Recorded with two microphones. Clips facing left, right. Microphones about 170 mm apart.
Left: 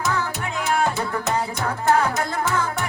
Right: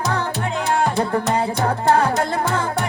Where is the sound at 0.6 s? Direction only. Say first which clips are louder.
Right 2 dB; 30° right (ahead or behind).